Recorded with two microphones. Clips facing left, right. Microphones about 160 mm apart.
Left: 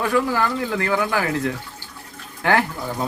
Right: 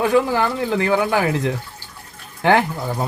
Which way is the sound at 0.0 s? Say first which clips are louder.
Right 3 dB; 20° right (ahead or behind).